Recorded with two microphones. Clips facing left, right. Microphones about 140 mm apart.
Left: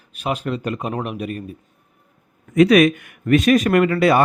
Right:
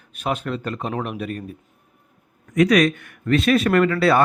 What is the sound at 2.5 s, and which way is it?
A man's voice, 25° left (ahead or behind).